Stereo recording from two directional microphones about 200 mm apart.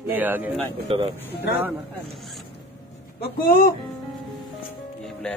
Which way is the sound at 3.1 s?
45° left (ahead or behind).